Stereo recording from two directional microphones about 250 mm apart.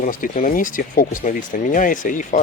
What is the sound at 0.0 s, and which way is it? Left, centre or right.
Speech, left.